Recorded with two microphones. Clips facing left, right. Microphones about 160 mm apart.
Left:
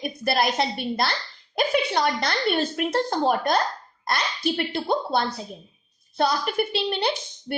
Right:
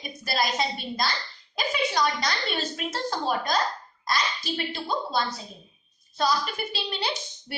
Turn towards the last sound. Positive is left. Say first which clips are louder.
# left 6 dB
turn(degrees=55)  # may be behind; listen again after turning